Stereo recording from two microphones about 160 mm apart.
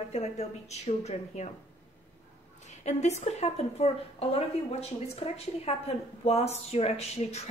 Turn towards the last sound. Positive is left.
turn(degrees=40)  # may be behind; listen again after turning